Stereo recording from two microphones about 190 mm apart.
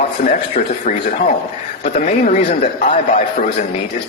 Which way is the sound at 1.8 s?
45° left (ahead or behind).